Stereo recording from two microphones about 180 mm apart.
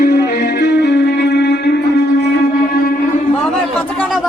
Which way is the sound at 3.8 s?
5° left (ahead or behind).